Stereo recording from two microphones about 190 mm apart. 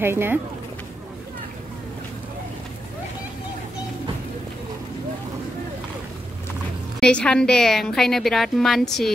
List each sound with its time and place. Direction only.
0.0 s speech: 10° right (ahead or behind)
7.0 s a woman's voice: 5° left (ahead or behind)